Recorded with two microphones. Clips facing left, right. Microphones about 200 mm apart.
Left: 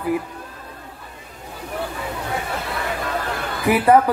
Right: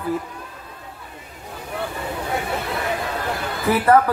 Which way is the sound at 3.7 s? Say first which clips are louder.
Left 2 dB; 15° left (ahead or behind).